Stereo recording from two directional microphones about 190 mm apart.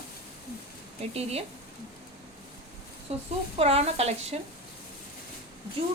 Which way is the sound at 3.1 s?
35° right (ahead or behind).